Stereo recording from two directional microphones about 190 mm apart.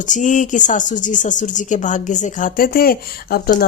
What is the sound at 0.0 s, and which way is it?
Speech, 40° left (ahead or behind).